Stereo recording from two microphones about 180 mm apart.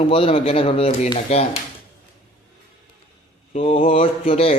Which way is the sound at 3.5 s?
35° left (ahead or behind).